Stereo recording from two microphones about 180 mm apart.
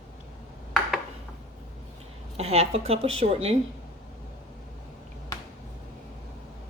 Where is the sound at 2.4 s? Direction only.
35° right (ahead or behind).